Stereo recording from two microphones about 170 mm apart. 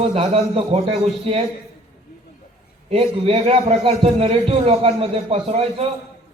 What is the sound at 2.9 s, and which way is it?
A man's voice, 35° right (ahead or behind).